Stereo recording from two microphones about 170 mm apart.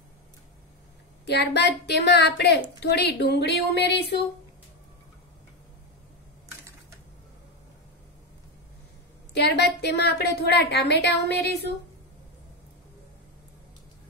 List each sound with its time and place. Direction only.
1.2 s a woman's voice: 85° left
9.3 s a woman's voice: 80° left